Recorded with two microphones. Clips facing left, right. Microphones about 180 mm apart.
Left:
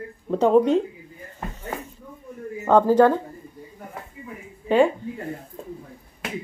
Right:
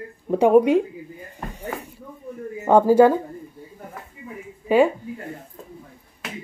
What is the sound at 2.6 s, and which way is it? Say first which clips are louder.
Speech: right 2 dB; 10° right (ahead or behind).